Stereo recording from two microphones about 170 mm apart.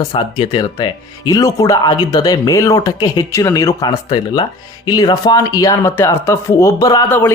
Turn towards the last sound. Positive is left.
turn(degrees=10)  # may be behind; listen again after turning